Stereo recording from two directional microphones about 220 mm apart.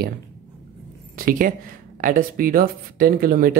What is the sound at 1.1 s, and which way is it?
Speech, 40° right (ahead or behind).